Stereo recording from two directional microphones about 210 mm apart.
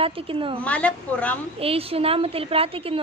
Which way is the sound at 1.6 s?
25° right (ahead or behind).